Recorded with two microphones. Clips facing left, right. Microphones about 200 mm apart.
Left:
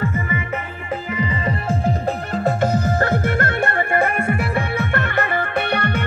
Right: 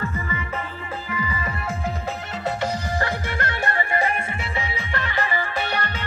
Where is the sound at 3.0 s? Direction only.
50° left (ahead or behind).